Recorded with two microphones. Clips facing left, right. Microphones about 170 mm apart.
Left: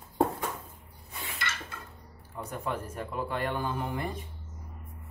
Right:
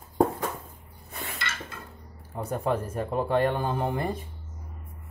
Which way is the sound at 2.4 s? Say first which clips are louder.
Right 7 dB; 35° right (ahead or behind).